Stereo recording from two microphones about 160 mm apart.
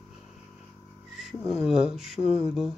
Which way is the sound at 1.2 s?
Centre (ahead or behind).